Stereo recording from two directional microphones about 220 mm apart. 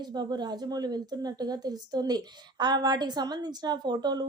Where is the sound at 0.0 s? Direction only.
20° right (ahead or behind).